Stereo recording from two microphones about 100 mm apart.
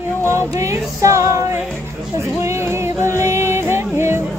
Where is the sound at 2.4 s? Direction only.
25° right (ahead or behind).